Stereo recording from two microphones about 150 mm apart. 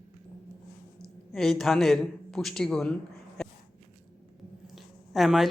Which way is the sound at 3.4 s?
5° left (ahead or behind).